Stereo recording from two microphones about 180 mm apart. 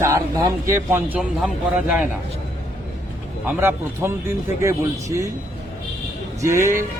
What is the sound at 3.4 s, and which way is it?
Speech, 10° right (ahead or behind).